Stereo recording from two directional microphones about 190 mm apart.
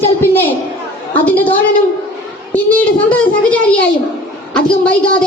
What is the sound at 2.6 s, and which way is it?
A child's voice, 5° left (ahead or behind).